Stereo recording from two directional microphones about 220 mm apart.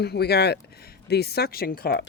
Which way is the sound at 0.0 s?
45° left (ahead or behind).